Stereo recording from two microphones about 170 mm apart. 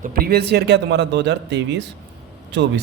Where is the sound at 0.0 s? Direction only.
60° right (ahead or behind).